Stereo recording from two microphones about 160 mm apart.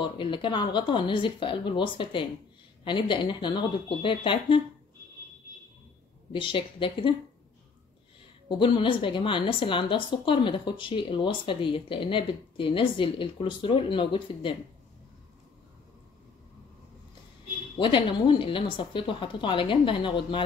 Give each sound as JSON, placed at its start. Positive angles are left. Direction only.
{"t": 0.0, "sound": "a woman's voice", "side_deg": 30}
{"t": 6.3, "sound": "a woman's voice", "side_deg": 30}
{"t": 8.5, "sound": "a woman's voice", "side_deg": 30}
{"t": 17.7, "sound": "a woman's voice", "side_deg": 30}